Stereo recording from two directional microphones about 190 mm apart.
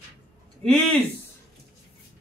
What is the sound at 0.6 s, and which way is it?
Speech, 5° left (ahead or behind).